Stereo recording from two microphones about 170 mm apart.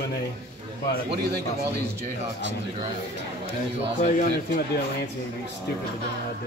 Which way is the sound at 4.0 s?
55° left (ahead or behind).